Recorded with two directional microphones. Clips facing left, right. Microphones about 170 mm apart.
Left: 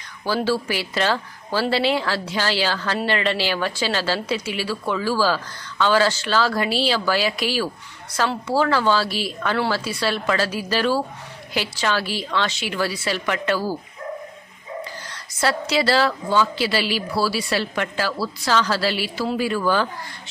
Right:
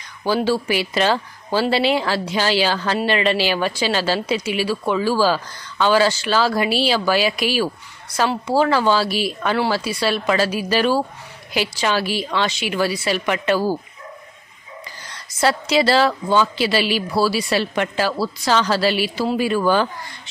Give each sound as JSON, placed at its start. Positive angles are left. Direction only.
{"t": 0.2, "sound": "speech", "side_deg": -15}
{"t": 15.4, "sound": "a woman's voice", "side_deg": -20}